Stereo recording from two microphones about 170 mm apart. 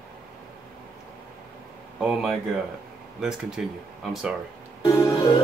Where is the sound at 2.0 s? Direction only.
Centre (ahead or behind).